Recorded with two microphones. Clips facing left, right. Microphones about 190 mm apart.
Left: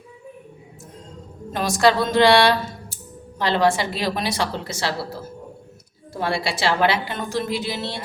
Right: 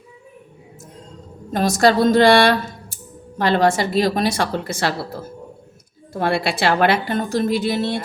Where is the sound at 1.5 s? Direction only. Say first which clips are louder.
Right 3 dB; 40° right (ahead or behind).